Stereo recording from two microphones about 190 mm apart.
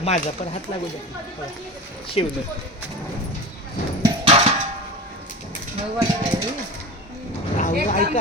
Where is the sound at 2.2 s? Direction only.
30° left (ahead or behind).